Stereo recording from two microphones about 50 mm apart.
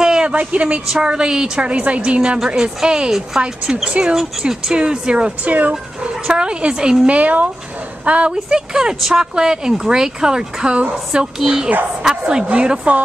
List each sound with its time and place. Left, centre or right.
0.0 s a sound: centre
0.8 s speech: centre
2.3 s speech: centre
5.4 s speech: right
8.3 s speech: centre